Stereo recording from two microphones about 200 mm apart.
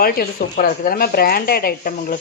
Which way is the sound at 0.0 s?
50° left (ahead or behind).